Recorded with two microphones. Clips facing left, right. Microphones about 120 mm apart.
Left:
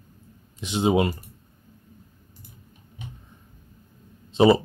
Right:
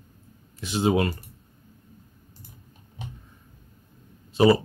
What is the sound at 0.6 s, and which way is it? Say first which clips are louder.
Speech: left 1 dB; 20° left (ahead or behind).